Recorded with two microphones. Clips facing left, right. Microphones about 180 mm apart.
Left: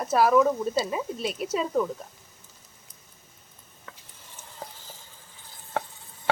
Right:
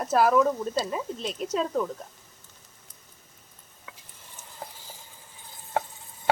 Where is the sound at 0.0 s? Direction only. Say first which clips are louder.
Left 1 dB; centre (ahead or behind).